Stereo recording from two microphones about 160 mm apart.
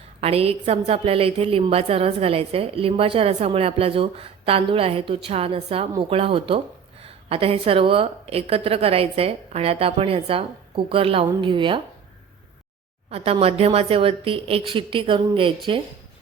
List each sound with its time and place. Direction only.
0.2 s a woman's voice: 40° right (ahead or behind)
13.1 s a woman's voice: 40° right (ahead or behind)